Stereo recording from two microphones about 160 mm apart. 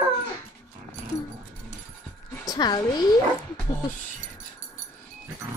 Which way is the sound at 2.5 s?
25° left (ahead or behind).